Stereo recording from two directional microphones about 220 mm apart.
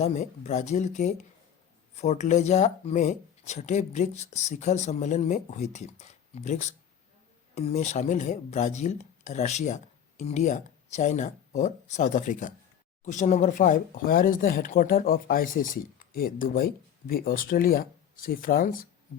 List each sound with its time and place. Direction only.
0.0 s speech: 30° left (ahead or behind)